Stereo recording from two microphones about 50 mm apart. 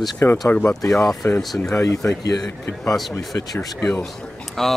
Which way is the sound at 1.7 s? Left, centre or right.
Left.